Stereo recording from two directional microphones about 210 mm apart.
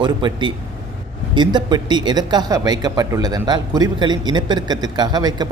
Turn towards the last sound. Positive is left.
turn(degrees=-20)  # may be behind; listen again after turning